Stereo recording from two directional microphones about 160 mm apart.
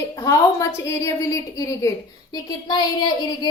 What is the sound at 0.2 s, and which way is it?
A woman's voice, 20° left (ahead or behind).